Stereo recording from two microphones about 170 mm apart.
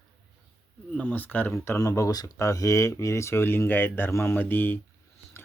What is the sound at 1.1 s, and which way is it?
Speech, 10° left (ahead or behind).